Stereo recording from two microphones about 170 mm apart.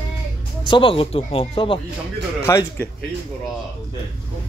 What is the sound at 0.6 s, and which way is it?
Speech, 30° left (ahead or behind).